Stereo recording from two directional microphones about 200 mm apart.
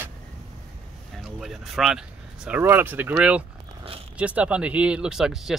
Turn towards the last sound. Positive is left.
turn(degrees=0)  # may be behind; listen again after turning